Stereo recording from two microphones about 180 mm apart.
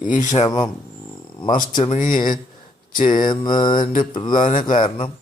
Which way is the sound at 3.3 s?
25° left (ahead or behind).